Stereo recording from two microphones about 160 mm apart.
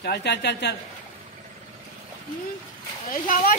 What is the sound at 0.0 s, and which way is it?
Speech, 90° left.